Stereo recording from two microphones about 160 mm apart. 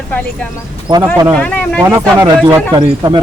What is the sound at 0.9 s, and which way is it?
Speech, 30° right (ahead or behind).